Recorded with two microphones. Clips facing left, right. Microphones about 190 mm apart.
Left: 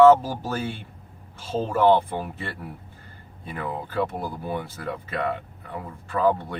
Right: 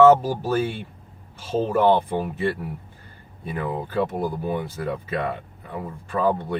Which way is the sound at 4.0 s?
15° right (ahead or behind).